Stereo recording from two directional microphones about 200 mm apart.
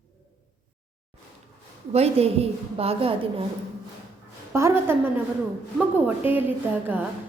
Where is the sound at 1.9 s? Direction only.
30° right (ahead or behind).